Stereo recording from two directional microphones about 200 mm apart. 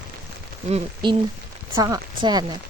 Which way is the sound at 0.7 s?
25° right (ahead or behind).